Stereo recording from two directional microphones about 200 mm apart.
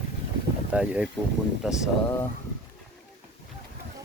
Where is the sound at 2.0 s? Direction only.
10° left (ahead or behind).